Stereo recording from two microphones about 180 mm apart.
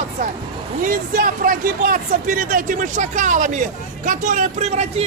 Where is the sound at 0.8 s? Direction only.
50° right (ahead or behind).